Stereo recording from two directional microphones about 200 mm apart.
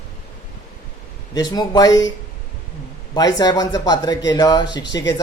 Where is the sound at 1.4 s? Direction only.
20° left (ahead or behind).